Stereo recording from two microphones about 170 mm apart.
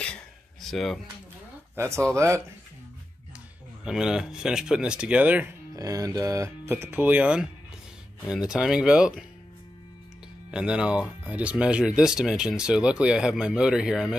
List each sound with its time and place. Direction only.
0.0 s a sound: 5° left (ahead or behind)
1.8 s speech: 15° right (ahead or behind)
3.8 s speech: 5° right (ahead or behind)
5.8 s speech: 20° right (ahead or behind)
10.5 s speech: 5° right (ahead or behind)